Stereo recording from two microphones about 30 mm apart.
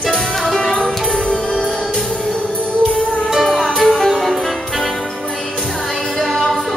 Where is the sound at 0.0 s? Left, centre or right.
Centre.